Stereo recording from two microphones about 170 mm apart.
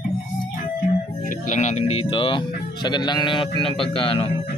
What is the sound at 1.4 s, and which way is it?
A man's voice, 45° left (ahead or behind).